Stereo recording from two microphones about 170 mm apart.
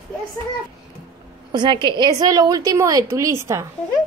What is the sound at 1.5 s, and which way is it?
A woman's voice, 25° right (ahead or behind).